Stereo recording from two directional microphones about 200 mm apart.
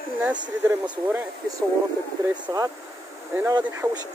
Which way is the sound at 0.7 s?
10° right (ahead or behind).